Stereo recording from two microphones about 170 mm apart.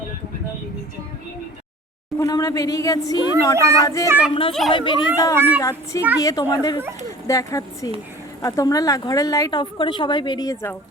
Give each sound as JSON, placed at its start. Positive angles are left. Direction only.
{"t": 2.1, "sound": "a woman's voice", "side_deg": 20}
{"t": 3.6, "sound": "speech", "side_deg": -20}
{"t": 4.3, "sound": "a woman's voice", "side_deg": 30}
{"t": 5.5, "sound": "a woman's voice", "side_deg": 20}